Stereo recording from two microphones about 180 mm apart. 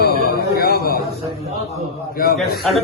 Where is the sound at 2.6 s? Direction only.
Centre (ahead or behind).